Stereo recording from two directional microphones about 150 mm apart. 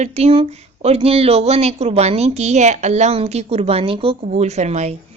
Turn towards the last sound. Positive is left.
turn(degrees=-45)  # may be behind; listen again after turning